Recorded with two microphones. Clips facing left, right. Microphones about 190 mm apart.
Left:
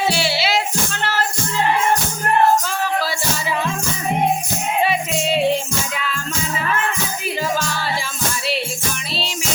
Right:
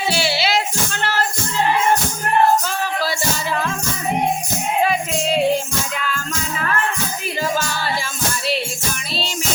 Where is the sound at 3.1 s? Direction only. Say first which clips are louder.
Right 1 dB; 5° left (ahead or behind).